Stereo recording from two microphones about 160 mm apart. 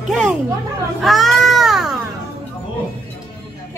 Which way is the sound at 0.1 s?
5° right (ahead or behind).